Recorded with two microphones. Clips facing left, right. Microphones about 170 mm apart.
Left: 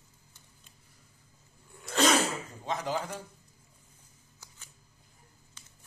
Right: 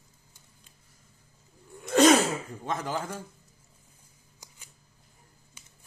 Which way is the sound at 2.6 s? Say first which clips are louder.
Left 1 dB; 50° right (ahead or behind).